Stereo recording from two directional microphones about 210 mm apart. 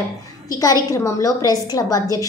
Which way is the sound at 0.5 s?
15° left (ahead or behind).